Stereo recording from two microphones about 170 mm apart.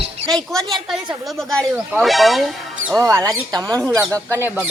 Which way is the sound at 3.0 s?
20° right (ahead or behind).